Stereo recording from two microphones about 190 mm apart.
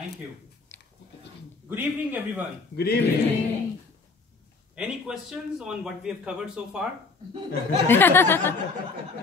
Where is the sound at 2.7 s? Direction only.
55° left (ahead or behind).